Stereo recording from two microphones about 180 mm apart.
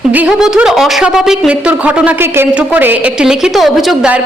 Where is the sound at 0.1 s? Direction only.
5° right (ahead or behind).